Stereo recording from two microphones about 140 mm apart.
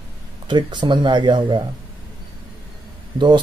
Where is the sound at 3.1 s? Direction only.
35° right (ahead or behind).